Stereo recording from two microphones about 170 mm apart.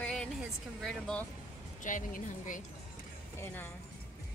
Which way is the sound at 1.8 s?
50° left (ahead or behind).